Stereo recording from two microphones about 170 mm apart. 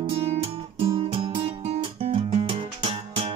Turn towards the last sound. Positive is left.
turn(degrees=-30)  # may be behind; listen again after turning